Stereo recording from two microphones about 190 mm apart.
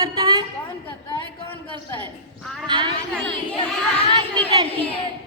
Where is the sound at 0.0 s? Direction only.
25° right (ahead or behind).